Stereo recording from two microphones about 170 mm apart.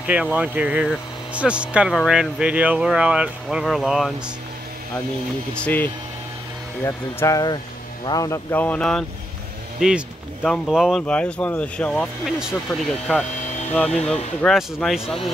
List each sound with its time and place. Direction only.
0.0 s speech: 10° right (ahead or behind)
5.5 s speech: 10° left (ahead or behind)
13.7 s speech: 5° left (ahead or behind)